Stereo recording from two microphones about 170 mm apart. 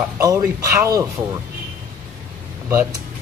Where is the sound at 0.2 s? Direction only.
20° right (ahead or behind).